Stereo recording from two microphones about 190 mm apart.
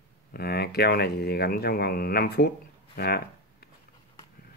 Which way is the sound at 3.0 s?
55° left (ahead or behind).